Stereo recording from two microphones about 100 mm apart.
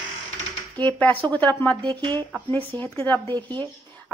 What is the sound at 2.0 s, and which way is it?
Speech, 50° right (ahead or behind).